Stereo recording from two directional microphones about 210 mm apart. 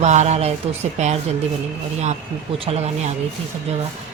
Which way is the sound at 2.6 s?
30° right (ahead or behind).